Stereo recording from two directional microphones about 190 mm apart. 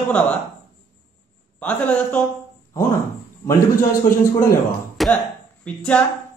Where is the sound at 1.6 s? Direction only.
10° left (ahead or behind).